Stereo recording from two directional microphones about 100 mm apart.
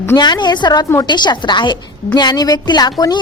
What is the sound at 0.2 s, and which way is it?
A woman's voice, 45° left (ahead or behind).